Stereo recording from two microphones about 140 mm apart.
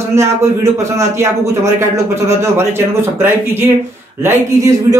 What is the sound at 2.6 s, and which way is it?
A man's voice, 15° right (ahead or behind).